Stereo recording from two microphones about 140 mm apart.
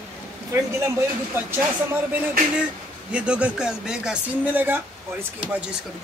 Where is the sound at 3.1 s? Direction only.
10° right (ahead or behind).